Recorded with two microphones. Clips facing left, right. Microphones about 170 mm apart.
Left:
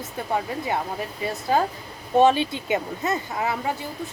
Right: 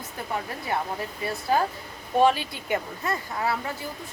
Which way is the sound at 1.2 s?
20° left (ahead or behind).